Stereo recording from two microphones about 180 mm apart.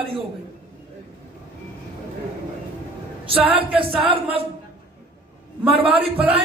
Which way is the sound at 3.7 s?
30° right (ahead or behind).